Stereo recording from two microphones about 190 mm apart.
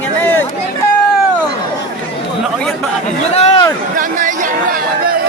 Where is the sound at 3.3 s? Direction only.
35° left (ahead or behind).